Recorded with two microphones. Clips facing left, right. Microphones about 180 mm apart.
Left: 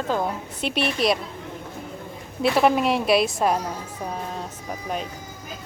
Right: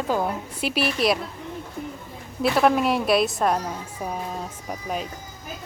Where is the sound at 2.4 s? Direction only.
Centre (ahead or behind).